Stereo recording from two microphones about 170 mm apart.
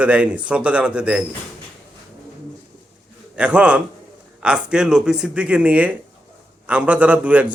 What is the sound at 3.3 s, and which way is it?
A man's voice, 5° right (ahead or behind).